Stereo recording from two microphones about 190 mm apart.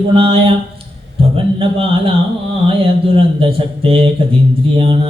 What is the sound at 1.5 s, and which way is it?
Mantra, 30° right (ahead or behind).